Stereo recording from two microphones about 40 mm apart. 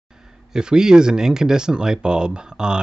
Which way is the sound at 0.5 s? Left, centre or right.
Centre.